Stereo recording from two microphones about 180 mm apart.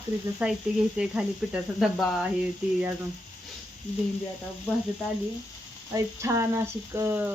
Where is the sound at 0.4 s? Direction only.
5° right (ahead or behind).